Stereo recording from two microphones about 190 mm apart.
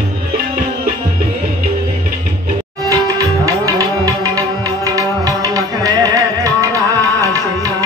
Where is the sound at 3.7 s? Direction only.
15° right (ahead or behind).